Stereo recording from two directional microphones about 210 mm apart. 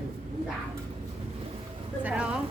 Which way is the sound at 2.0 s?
5° right (ahead or behind).